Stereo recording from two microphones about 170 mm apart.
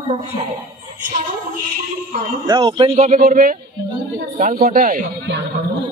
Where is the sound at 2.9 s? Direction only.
40° right (ahead or behind).